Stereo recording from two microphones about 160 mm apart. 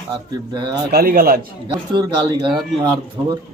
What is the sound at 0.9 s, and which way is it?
Speech, 75° right (ahead or behind).